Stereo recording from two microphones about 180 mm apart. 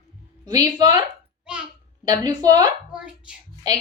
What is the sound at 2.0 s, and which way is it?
Speech, 20° right (ahead or behind).